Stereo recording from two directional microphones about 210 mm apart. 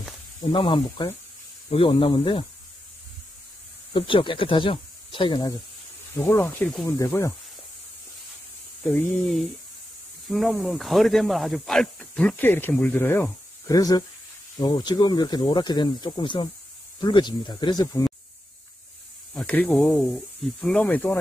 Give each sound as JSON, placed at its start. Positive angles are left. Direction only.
{"t": 0.5, "sound": "speech", "side_deg": 25}
{"t": 3.9, "sound": "speech", "side_deg": 25}
{"t": 6.1, "sound": "speech", "side_deg": 10}
{"t": 8.8, "sound": "speech", "side_deg": 5}
{"t": 19.3, "sound": "speech", "side_deg": 5}